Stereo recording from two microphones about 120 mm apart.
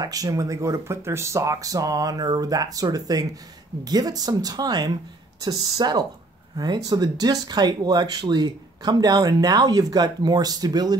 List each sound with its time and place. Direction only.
0.0 s speech: 30° right (ahead or behind)